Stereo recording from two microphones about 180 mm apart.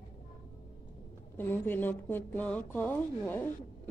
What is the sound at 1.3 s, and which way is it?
A woman's voice, 10° left (ahead or behind).